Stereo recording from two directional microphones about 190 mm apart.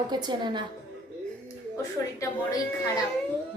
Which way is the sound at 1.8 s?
20° left (ahead or behind).